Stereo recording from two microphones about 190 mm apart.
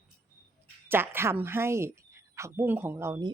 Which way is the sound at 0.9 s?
10° right (ahead or behind).